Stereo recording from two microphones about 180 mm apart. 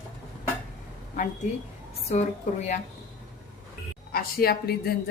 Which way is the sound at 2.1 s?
40° left (ahead or behind).